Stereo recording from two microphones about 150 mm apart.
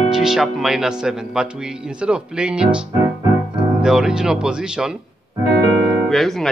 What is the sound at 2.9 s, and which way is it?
Music, 20° right (ahead or behind).